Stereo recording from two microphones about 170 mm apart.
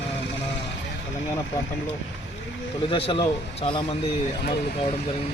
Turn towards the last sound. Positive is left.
turn(degrees=30)  # may be behind; listen again after turning